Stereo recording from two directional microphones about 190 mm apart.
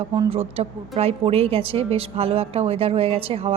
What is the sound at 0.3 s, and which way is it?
A woman's voice, 30° right (ahead or behind).